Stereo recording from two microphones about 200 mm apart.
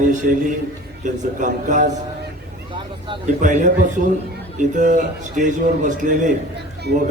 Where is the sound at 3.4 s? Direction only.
40° right (ahead or behind).